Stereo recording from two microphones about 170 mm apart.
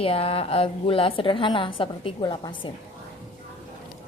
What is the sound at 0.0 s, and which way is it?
A woman's voice, 35° left (ahead or behind).